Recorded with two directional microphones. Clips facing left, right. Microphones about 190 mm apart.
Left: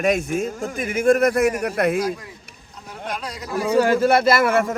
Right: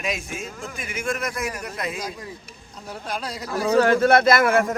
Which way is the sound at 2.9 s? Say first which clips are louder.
Even; 30° right (ahead or behind).